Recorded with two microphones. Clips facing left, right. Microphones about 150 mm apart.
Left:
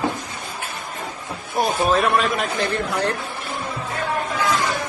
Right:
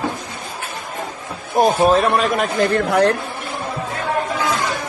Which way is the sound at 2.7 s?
65° right (ahead or behind).